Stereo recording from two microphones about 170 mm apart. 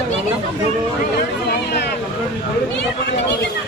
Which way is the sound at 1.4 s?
70° left (ahead or behind).